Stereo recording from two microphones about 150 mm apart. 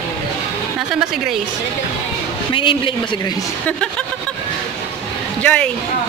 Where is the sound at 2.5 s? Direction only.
35° left (ahead or behind).